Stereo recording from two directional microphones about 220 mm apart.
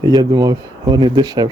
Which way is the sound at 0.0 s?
15° right (ahead or behind).